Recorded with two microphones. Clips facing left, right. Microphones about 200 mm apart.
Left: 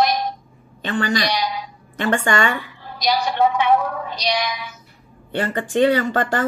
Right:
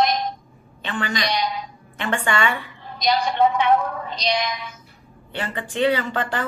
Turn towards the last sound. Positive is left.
turn(degrees=45)  # may be behind; listen again after turning